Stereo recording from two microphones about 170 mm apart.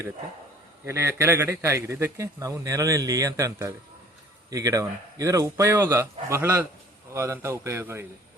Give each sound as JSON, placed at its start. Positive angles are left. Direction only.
{"t": 0.9, "sound": "a man's voice", "side_deg": -15}